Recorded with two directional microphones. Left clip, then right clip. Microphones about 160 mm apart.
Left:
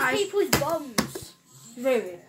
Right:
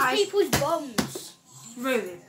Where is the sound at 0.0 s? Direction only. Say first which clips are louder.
Right 1 dB; 5° right (ahead or behind).